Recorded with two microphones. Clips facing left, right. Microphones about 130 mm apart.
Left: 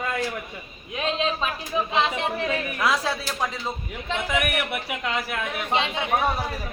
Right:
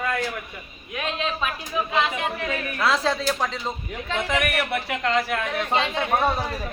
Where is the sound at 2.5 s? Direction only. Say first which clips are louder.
Right 3 dB; 15° left (ahead or behind).